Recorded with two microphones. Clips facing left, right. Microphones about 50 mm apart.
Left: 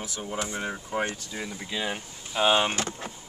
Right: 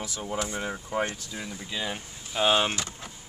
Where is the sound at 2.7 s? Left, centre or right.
Left.